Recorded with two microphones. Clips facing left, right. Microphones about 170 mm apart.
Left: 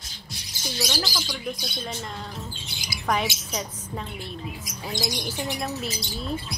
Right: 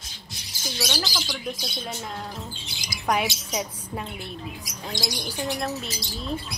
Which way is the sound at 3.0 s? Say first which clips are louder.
Right 1 dB; 10° right (ahead or behind).